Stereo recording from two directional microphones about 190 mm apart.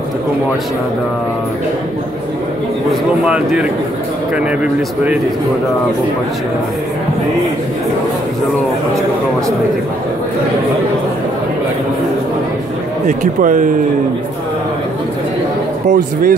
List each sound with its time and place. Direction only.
2.9 s speech: 5° right (ahead or behind)
13.0 s speech: 45° right (ahead or behind)
15.9 s speech: 45° right (ahead or behind)